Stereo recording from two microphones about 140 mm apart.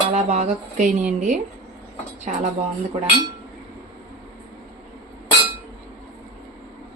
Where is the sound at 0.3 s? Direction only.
55° right (ahead or behind).